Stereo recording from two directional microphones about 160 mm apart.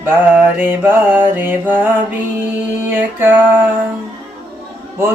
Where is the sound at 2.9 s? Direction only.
10° right (ahead or behind).